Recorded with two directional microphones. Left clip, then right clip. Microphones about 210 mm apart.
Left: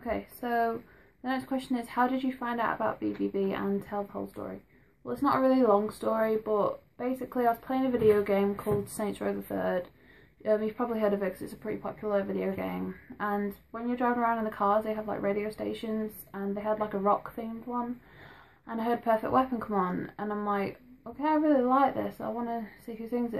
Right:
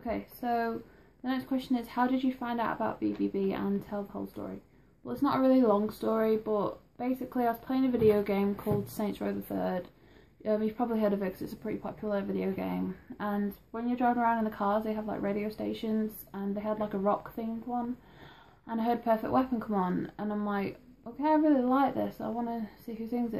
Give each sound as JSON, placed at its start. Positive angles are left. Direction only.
{"t": 0.0, "sound": "a woman's voice", "side_deg": 5}
{"t": 18.7, "sound": "a woman's voice", "side_deg": 5}